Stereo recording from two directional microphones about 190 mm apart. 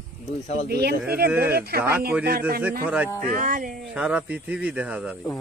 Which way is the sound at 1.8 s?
15° right (ahead or behind).